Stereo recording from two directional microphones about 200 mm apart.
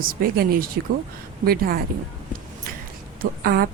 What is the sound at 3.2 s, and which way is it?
Speech, 50° right (ahead or behind).